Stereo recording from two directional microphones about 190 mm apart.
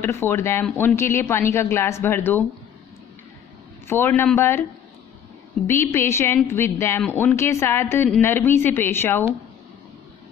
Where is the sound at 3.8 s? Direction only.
10° left (ahead or behind).